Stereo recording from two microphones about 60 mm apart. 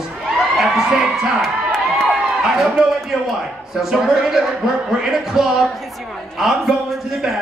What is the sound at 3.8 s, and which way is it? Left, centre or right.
A man's voice, centre.